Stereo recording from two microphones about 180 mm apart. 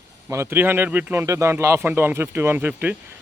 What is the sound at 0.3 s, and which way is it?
Speech, 15° right (ahead or behind).